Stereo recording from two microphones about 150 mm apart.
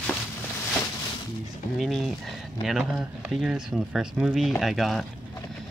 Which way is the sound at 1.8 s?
Centre (ahead or behind).